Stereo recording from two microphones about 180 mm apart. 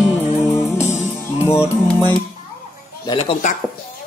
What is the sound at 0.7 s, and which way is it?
Music, 40° left (ahead or behind).